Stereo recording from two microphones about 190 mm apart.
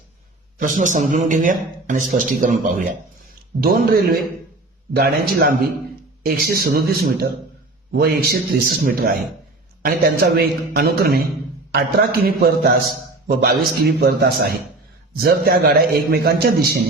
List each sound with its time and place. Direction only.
0.6 s a man's voice: 40° right (ahead or behind)